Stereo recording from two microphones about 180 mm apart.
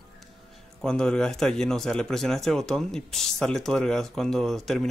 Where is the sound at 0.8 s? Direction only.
5° left (ahead or behind).